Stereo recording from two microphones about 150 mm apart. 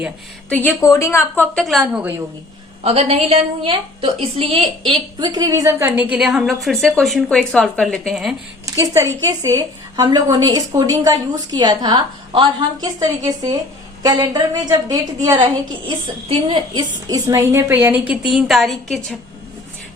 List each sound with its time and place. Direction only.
0.5 s a woman's voice: 10° left (ahead or behind)
1.5 s a woman's voice: centre (ahead or behind)
2.8 s a woman's voice: 40° right (ahead or behind); by 5.9 s 20° right (ahead or behind)
6.0 s a woman's voice: 5° right (ahead or behind)
8.6 s a woman's voice: 20° right (ahead or behind); by 19.1 s centre (ahead or behind)